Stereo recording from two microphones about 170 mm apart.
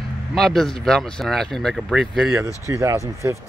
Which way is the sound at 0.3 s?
Centre (ahead or behind).